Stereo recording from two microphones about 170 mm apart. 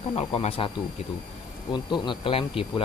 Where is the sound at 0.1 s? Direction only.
35° left (ahead or behind).